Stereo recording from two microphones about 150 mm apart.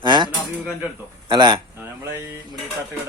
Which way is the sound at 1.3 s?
30° right (ahead or behind).